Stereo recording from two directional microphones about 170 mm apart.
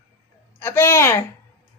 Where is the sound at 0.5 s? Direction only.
15° left (ahead or behind).